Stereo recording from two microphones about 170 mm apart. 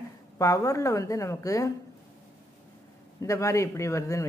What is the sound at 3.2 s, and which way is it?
A woman's voice, 20° left (ahead or behind).